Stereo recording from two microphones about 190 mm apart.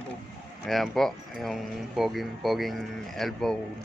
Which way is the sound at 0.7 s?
Centre (ahead or behind).